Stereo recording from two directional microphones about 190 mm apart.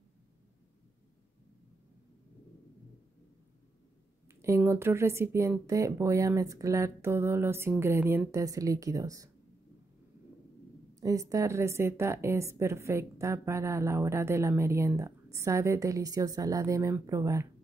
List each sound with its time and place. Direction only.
4.3 s a woman's voice: 15° right (ahead or behind)
11.0 s a woman's voice: 15° right (ahead or behind)